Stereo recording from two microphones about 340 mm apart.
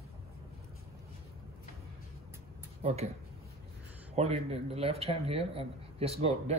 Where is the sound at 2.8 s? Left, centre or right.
Centre.